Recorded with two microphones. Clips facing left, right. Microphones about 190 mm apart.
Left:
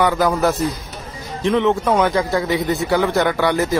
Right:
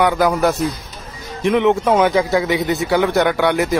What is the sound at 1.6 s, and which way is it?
Speech, 15° right (ahead or behind).